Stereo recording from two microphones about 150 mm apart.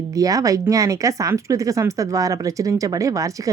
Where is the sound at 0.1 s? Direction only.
25° right (ahead or behind).